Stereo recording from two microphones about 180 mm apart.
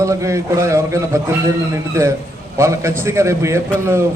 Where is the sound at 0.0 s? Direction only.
15° right (ahead or behind).